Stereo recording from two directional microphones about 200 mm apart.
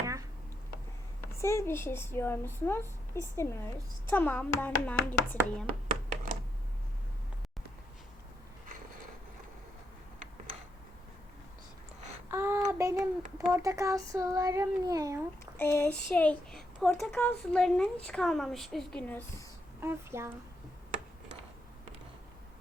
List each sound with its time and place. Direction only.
0.0 s a sound: 15° right (ahead or behind)
1.2 s a woman's voice: 15° left (ahead or behind)
12.3 s child singing: 10° right (ahead or behind)
15.5 s speech: 10° left (ahead or behind)
19.8 s child singing: 10° right (ahead or behind)